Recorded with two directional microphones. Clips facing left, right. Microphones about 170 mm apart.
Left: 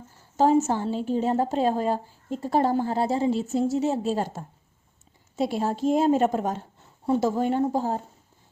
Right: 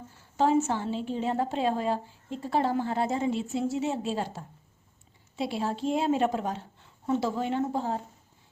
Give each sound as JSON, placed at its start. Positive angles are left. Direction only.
{"t": 0.3, "sound": "a woman's voice", "side_deg": 40}